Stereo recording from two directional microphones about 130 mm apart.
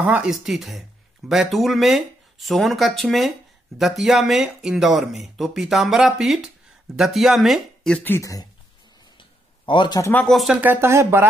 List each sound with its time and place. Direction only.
0.0 s speech: 10° right (ahead or behind)
8.0 s speech: 20° left (ahead or behind)
9.7 s a man's voice: 35° left (ahead or behind)
10.1 s speech: centre (ahead or behind)
10.6 s speech: 15° right (ahead or behind)